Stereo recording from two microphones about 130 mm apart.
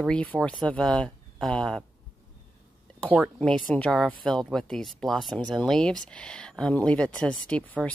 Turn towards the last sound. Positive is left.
turn(degrees=5)  # may be behind; listen again after turning